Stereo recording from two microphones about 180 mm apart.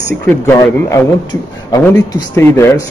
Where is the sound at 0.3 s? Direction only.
15° left (ahead or behind).